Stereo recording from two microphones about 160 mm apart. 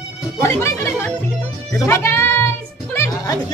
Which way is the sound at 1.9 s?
15° left (ahead or behind).